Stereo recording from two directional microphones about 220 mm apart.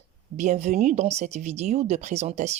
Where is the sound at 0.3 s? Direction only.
30° right (ahead or behind).